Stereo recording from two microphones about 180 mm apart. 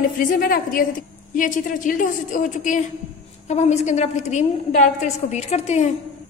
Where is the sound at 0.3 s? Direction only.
50° left (ahead or behind).